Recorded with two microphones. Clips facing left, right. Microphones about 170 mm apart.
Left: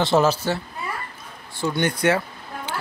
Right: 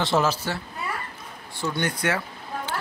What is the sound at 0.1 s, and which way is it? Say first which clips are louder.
Speech: left 4 dB; 30° left (ahead or behind).